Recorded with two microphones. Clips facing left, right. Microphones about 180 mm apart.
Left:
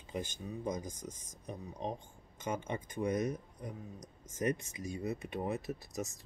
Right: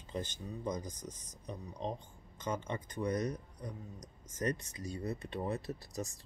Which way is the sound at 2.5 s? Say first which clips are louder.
Left 1 dB; 15° left (ahead or behind).